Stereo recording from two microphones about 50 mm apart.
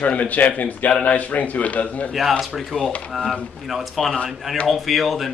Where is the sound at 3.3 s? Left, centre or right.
Centre.